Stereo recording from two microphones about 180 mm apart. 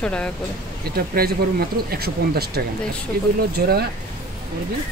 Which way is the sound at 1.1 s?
60° right (ahead or behind).